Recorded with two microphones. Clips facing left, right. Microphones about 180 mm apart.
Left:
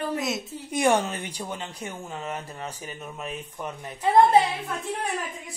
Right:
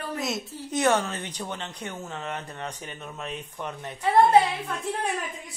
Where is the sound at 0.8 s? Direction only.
15° left (ahead or behind).